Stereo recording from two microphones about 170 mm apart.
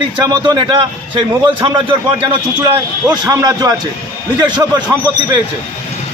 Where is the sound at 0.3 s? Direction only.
25° right (ahead or behind).